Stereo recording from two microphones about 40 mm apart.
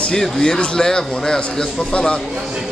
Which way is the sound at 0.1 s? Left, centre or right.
Centre.